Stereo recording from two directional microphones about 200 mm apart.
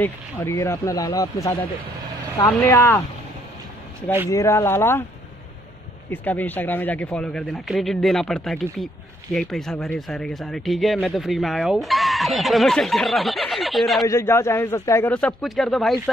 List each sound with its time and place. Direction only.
0.0 s speech: 10° left (ahead or behind)
4.3 s speech: 15° left (ahead or behind)
6.0 s speech: 10° left (ahead or behind)
14.0 s speech: 15° left (ahead or behind)